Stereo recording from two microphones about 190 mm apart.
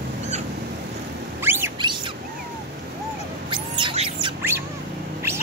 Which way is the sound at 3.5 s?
25° right (ahead or behind).